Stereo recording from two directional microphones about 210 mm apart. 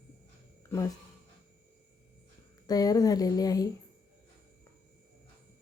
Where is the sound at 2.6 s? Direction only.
20° left (ahead or behind).